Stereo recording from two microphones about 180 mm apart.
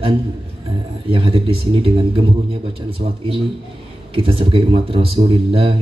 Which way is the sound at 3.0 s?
40° right (ahead or behind).